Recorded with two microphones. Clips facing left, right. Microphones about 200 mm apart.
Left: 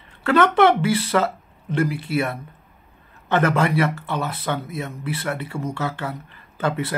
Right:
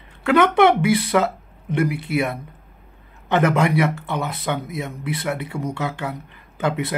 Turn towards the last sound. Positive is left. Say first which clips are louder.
# right 1 dB
turn(degrees=-15)  # may be behind; listen again after turning